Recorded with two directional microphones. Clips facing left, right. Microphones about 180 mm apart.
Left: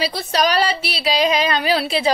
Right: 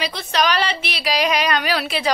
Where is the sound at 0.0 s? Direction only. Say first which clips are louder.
Left 2 dB; 35° left (ahead or behind).